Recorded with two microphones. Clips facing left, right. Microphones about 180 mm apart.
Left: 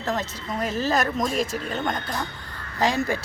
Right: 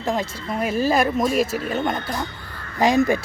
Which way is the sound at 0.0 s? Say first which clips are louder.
Right 3 dB; 10° right (ahead or behind).